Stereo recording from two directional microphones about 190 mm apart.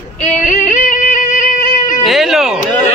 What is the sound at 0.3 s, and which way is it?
Yodeling, 40° left (ahead or behind).